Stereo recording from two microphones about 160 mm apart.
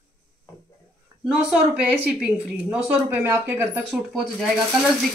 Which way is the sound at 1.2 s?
10° right (ahead or behind).